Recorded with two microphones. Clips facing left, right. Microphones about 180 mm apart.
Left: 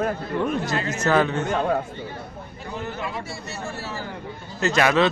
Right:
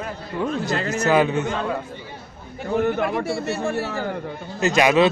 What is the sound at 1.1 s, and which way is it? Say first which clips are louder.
Speech: right 2 dB; 15° right (ahead or behind).